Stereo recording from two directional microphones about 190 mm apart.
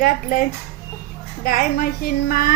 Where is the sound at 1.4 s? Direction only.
50° left (ahead or behind).